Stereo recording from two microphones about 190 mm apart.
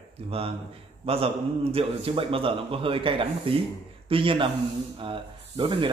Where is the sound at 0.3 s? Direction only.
30° right (ahead or behind).